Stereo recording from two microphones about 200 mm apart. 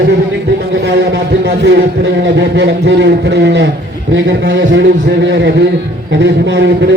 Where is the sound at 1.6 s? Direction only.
60° right (ahead or behind).